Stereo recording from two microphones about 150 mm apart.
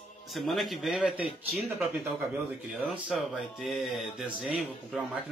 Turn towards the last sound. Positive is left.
turn(degrees=-5)  # may be behind; listen again after turning